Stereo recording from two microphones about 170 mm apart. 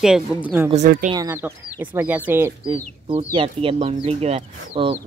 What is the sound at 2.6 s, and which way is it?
Speech, 35° right (ahead or behind).